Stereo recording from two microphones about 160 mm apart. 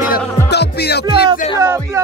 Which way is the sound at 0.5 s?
90° left.